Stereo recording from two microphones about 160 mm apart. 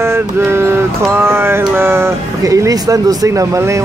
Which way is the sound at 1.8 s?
15° right (ahead or behind).